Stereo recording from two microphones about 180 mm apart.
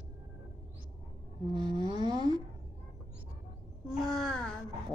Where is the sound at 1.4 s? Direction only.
25° right (ahead or behind).